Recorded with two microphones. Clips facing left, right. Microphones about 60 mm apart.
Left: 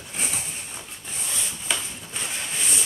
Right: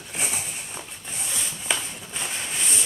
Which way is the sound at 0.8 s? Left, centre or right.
Right.